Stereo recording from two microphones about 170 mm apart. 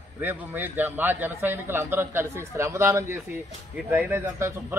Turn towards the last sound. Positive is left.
turn(degrees=-15)  # may be behind; listen again after turning